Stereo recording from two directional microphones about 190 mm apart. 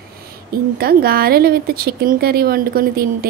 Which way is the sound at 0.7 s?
55° right (ahead or behind).